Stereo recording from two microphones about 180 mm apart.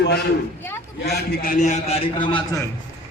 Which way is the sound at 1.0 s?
60° left (ahead or behind).